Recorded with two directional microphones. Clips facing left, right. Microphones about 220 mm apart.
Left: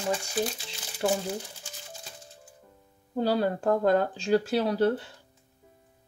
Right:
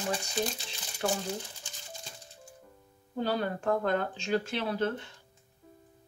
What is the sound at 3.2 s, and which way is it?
Speech, 35° left (ahead or behind).